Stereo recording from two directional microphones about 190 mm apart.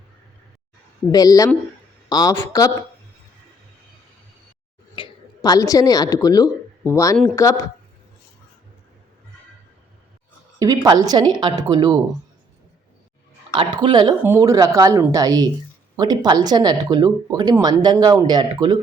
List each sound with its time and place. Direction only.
1.1 s a man's voice: 20° left (ahead or behind)
4.9 s speech: 25° left (ahead or behind)
10.6 s speech: 20° right (ahead or behind)
13.5 s speech: 25° right (ahead or behind)